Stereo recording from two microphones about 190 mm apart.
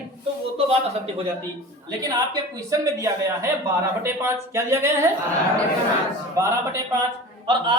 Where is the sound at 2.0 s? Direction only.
15° right (ahead or behind).